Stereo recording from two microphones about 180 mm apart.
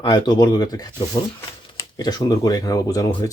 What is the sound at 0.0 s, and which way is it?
Speech, 25° left (ahead or behind).